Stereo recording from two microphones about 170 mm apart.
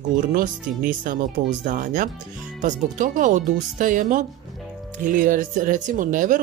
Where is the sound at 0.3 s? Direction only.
50° right (ahead or behind).